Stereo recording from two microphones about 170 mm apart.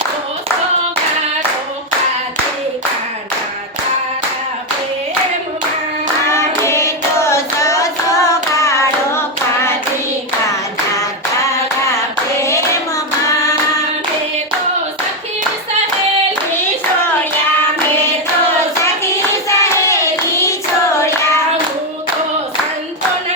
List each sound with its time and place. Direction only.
6.3 s hands: 15° left (ahead or behind)
19.5 s hands: 15° left (ahead or behind)